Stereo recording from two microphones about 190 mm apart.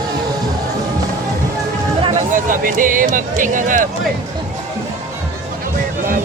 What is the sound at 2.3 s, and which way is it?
Speech, 45° right (ahead or behind).